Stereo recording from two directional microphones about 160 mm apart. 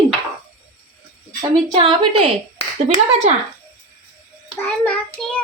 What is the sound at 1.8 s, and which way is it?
Speech, 35° right (ahead or behind).